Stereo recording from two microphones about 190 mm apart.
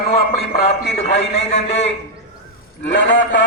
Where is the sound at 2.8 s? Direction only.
70° left (ahead or behind).